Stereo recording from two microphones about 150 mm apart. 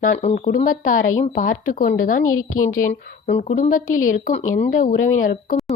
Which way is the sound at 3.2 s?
50° left (ahead or behind).